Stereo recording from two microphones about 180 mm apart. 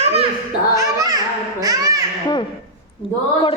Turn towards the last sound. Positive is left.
turn(degrees=-20)  # may be behind; listen again after turning